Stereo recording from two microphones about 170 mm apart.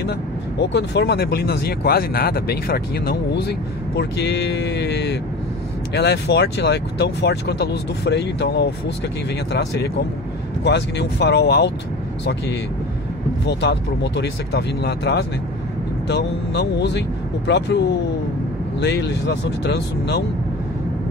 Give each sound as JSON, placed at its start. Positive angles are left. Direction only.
{"t": 0.6, "sound": "speech", "side_deg": 80}
{"t": 9.5, "sound": "speech", "side_deg": 90}
{"t": 13.5, "sound": "speech", "side_deg": 85}